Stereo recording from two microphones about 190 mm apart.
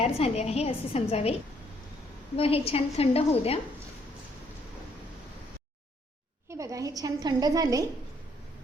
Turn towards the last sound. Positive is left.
turn(degrees=-20)  # may be behind; listen again after turning